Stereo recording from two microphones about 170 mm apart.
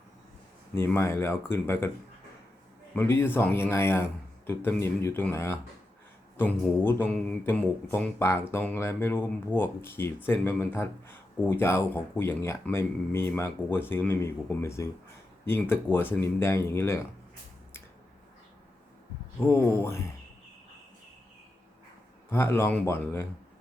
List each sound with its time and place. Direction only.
0.7 s speech: 15° left (ahead or behind)
2.9 s speech: 15° left (ahead or behind)
19.4 s speech: 15° left (ahead or behind)
22.3 s speech: 15° left (ahead or behind)